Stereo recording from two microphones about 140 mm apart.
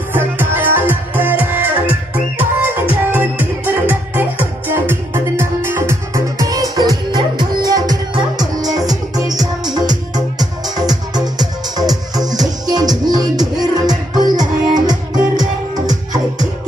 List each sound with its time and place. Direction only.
0.1 s music: 15° right (ahead or behind)